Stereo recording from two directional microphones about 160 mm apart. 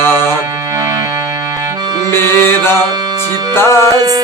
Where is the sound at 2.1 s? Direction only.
15° left (ahead or behind).